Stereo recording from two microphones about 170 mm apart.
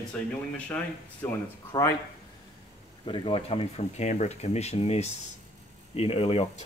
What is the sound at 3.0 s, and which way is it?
Speech, 30° left (ahead or behind).